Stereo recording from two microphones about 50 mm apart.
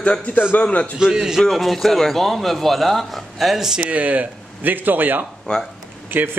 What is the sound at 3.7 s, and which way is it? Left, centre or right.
A man's voice, right.